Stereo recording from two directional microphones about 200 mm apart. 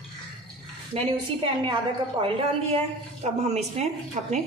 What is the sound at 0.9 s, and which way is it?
A woman's voice, 25° right (ahead or behind).